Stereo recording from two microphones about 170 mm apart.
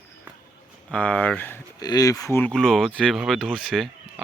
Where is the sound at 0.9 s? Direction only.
10° left (ahead or behind).